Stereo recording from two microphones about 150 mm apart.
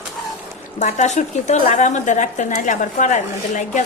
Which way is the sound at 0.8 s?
50° left (ahead or behind).